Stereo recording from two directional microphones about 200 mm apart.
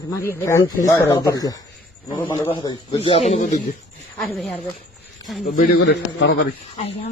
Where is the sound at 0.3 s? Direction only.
15° left (ahead or behind).